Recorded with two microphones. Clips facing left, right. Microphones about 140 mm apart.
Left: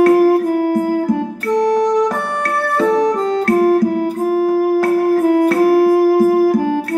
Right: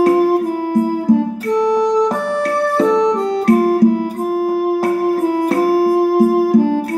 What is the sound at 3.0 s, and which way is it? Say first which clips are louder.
Music: right 1 dB; 15° right (ahead or behind).